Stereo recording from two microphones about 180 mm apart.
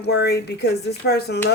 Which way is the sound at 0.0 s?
65° left (ahead or behind).